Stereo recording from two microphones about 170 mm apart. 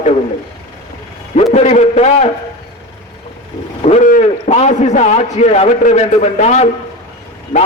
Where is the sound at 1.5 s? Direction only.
40° left (ahead or behind).